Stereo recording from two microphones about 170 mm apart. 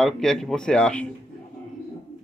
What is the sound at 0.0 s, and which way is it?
Speech, 5° left (ahead or behind).